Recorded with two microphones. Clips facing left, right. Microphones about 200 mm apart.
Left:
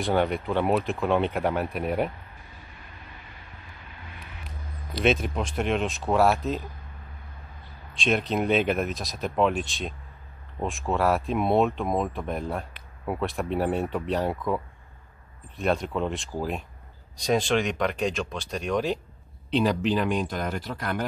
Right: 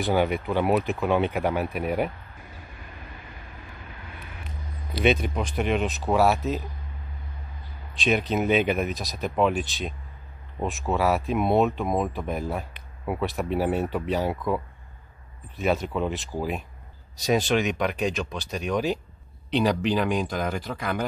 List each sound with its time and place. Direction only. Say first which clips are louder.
0.0 s speech: right 1 dB; 5° right (ahead or behind)
4.9 s speech: right 1 dB; centre (ahead or behind)
7.9 s speech: right 1 dB; centre (ahead or behind)